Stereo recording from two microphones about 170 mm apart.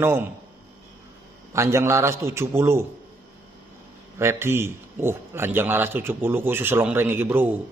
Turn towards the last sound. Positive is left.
turn(degrees=-10)  # may be behind; listen again after turning